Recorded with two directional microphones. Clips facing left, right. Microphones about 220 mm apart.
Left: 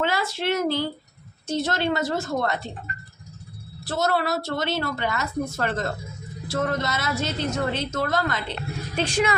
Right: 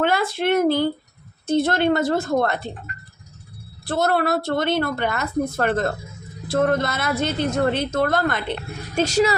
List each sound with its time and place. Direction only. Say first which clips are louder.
0.0 s a woman's voice: right 5 dB; 55° right (ahead or behind)
3.8 s a woman's voice: right 4 dB; 55° right (ahead or behind)
9.0 s a woman's voice: right 5 dB; 40° right (ahead or behind)